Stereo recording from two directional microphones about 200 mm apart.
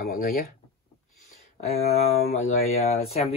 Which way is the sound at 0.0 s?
45° left (ahead or behind).